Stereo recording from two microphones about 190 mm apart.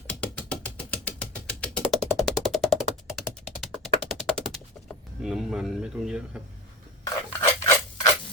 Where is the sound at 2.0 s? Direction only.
Centre (ahead or behind).